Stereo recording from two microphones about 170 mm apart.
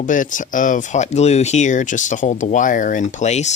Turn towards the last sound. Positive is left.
turn(degrees=40)  # may be behind; listen again after turning